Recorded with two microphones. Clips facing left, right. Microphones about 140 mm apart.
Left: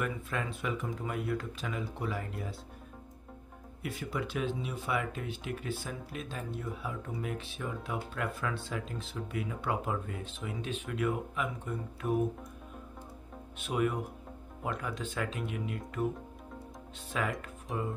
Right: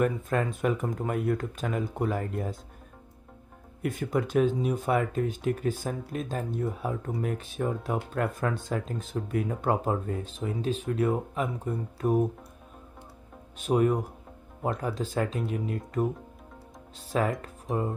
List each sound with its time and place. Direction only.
0.0 s speech: 45° right (ahead or behind)
3.8 s speech: 45° right (ahead or behind)
13.6 s speech: 40° right (ahead or behind)
17.4 s speech: 35° right (ahead or behind)